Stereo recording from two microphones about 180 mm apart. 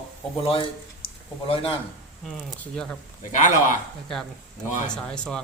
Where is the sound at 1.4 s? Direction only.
30° left (ahead or behind).